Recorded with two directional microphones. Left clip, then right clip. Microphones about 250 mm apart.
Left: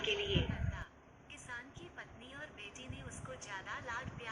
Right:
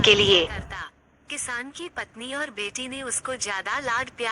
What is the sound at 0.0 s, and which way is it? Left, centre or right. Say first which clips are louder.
A man's voice: right 19 dB; right.